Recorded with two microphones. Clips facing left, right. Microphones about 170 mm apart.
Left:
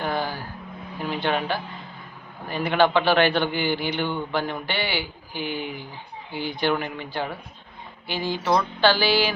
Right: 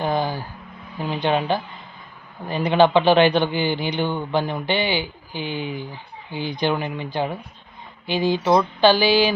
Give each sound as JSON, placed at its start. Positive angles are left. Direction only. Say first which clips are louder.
{"t": 0.0, "sound": "a man's voice", "louder": "right 4 dB", "side_deg": -15}